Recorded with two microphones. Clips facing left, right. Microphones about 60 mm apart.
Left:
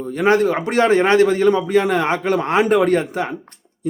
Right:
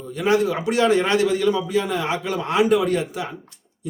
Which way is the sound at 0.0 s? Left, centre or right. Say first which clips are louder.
Left 4 dB; left.